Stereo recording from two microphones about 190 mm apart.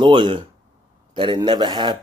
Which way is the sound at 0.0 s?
25° right (ahead or behind).